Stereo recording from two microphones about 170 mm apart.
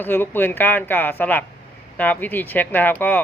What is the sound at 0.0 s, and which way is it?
A man's voice, 10° left (ahead or behind).